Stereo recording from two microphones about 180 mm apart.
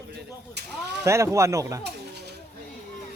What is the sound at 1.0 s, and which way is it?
Speech, 15° right (ahead or behind).